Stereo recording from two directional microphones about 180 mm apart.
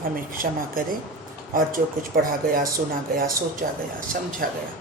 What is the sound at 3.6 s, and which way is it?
Speech, 55° right (ahead or behind).